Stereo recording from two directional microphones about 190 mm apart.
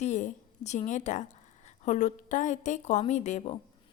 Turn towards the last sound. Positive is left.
turn(degrees=40)  # may be behind; listen again after turning